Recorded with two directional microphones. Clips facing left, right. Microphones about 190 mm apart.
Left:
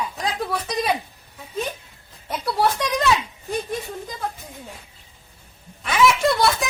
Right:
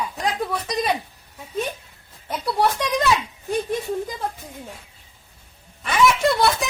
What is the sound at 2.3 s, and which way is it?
Speech, centre (ahead or behind).